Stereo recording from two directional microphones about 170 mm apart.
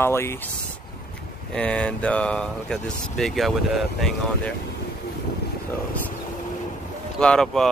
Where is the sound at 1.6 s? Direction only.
5° left (ahead or behind).